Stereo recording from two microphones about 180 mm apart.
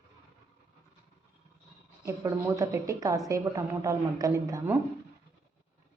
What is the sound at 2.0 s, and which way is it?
A woman's voice, 20° right (ahead or behind).